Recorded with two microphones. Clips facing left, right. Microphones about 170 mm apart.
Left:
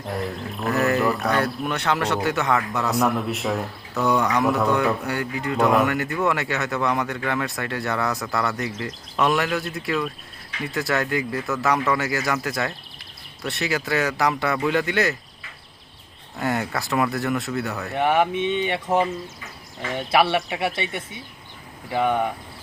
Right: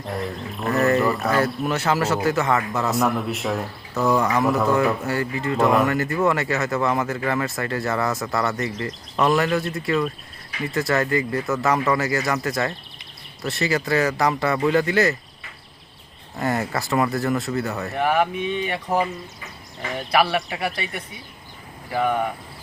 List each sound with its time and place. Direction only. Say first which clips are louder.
0.0 s speech: even; centre (ahead or behind)
16.4 s speech: right 1 dB; centre (ahead or behind)
17.9 s speech: left 1 dB; 25° left (ahead or behind)
20.3 s speech: left 1 dB; 25° left (ahead or behind)